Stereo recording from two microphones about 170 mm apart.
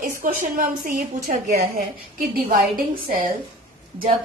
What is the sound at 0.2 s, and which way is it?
A woman's voice, 55° right (ahead or behind).